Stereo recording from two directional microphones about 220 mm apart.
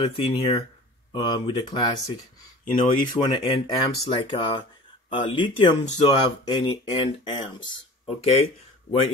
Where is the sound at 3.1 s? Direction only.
20° left (ahead or behind).